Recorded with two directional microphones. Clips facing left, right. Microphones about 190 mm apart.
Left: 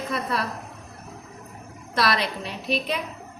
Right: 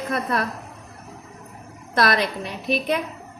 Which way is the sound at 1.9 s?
50° right (ahead or behind).